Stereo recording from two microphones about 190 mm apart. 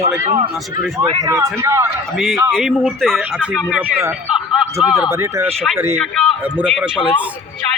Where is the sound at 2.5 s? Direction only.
Centre (ahead or behind).